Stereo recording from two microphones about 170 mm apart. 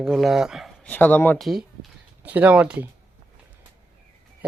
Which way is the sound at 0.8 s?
10° left (ahead or behind).